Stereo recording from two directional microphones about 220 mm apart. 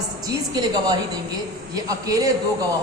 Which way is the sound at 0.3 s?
15° right (ahead or behind).